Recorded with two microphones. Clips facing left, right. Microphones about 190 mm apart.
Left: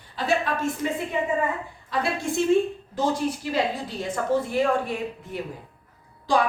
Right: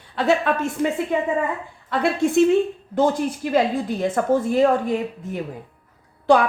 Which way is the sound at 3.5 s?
50° right (ahead or behind).